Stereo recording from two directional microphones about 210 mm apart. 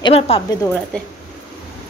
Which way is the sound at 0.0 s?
30° left (ahead or behind).